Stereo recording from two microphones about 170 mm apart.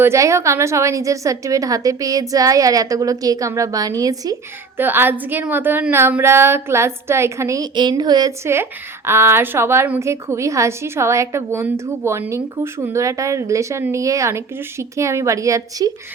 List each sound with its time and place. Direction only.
0.0 s a woman's voice: 15° right (ahead or behind)